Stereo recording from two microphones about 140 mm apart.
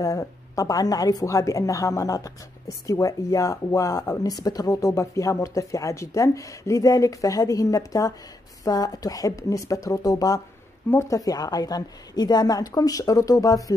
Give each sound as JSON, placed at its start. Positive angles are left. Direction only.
{"t": 0.0, "sound": "speech", "side_deg": 25}